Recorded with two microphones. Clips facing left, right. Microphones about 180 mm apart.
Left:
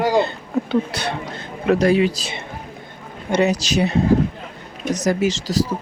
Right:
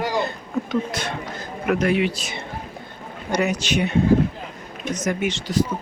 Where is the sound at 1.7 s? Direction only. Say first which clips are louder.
Left 4 dB; 35° left (ahead or behind).